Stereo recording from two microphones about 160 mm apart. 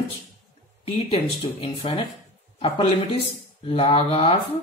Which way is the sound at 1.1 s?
35° left (ahead or behind).